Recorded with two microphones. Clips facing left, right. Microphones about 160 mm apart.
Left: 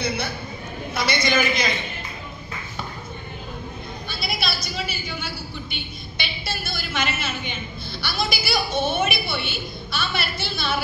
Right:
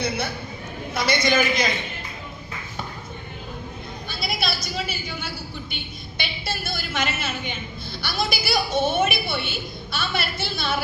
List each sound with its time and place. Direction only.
0.9 s a woman's voice: 45° right (ahead or behind)
4.1 s a sound: 45° right (ahead or behind)
6.1 s a woman's voice: 45° right (ahead or behind)